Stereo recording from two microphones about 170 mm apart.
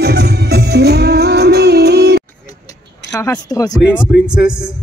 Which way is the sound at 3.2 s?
20° left (ahead or behind).